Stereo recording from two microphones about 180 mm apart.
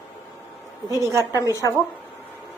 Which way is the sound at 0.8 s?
15° right (ahead or behind).